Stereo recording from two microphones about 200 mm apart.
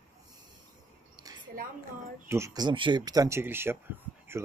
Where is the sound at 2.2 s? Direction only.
15° right (ahead or behind).